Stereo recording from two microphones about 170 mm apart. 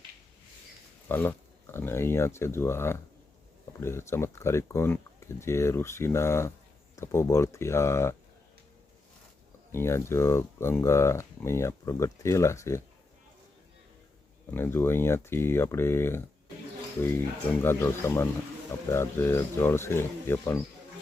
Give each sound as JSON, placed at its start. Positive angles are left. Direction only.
{"t": 1.0, "sound": "speech", "side_deg": 10}
{"t": 9.7, "sound": "speech", "side_deg": 15}
{"t": 14.5, "sound": "speech", "side_deg": 15}